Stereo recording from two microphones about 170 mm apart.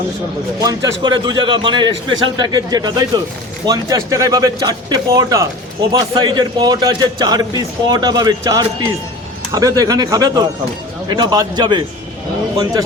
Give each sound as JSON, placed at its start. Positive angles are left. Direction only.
{"t": 0.6, "sound": "a man's voice", "side_deg": -20}